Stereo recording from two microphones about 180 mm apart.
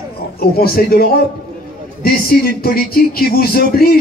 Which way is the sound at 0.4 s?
55° left (ahead or behind).